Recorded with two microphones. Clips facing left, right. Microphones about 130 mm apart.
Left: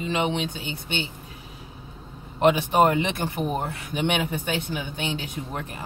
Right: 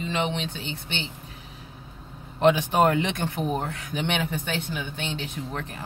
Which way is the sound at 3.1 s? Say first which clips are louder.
Left 1 dB; 5° left (ahead or behind).